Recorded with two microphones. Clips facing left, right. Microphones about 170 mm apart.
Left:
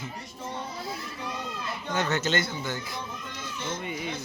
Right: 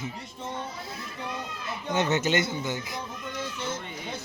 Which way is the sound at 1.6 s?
20° right (ahead or behind).